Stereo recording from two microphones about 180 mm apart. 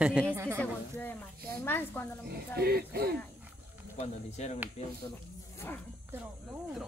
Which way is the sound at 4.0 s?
40° left (ahead or behind).